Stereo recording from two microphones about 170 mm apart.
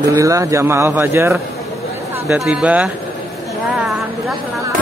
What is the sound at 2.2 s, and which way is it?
Speech, centre (ahead or behind).